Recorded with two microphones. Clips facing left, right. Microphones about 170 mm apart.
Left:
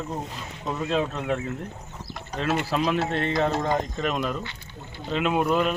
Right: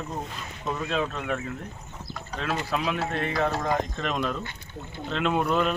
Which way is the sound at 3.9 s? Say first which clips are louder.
Left 2 dB; 5° left (ahead or behind).